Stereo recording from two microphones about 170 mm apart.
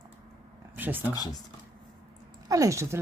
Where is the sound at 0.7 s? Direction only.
10° right (ahead or behind).